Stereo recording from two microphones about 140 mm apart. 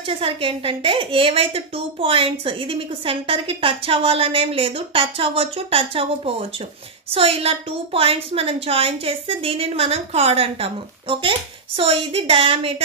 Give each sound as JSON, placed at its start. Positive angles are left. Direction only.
{"t": 0.0, "sound": "a woman's voice", "side_deg": -40}